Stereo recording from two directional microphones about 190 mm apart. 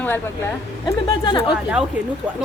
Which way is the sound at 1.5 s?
5° right (ahead or behind).